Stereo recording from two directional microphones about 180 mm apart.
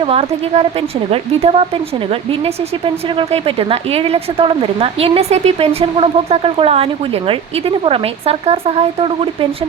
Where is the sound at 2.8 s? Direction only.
30° right (ahead or behind).